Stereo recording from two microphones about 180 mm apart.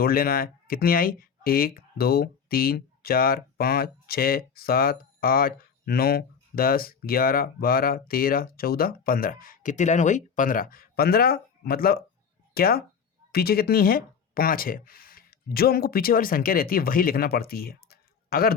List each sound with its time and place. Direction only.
0.0 s speech: 55° left (ahead or behind)